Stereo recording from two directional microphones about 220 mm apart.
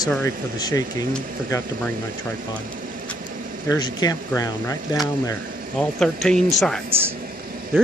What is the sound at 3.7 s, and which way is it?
Speech, 15° left (ahead or behind).